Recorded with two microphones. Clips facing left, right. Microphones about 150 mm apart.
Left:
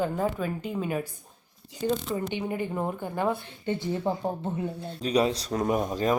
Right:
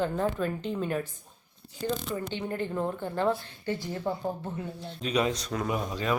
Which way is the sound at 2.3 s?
10° left (ahead or behind).